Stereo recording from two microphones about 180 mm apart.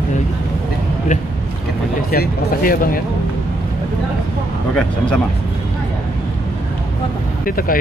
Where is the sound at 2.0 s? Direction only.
55° left (ahead or behind).